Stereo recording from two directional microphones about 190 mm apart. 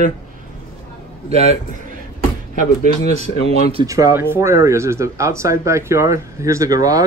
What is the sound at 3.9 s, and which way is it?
Speech, 15° right (ahead or behind).